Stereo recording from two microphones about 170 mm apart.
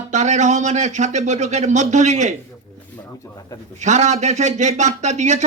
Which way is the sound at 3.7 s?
45° right (ahead or behind).